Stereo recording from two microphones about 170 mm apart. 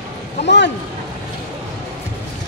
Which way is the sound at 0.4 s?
90° left.